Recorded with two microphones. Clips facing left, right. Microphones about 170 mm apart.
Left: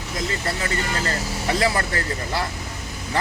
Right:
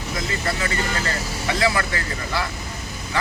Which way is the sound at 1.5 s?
35° left (ahead or behind).